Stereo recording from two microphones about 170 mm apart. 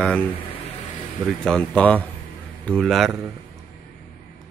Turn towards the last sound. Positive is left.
turn(degrees=0)  # may be behind; listen again after turning